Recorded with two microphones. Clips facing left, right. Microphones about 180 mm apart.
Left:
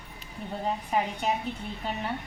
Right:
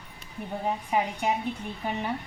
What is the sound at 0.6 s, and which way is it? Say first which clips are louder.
Speech: right 1 dB; 15° right (ahead or behind).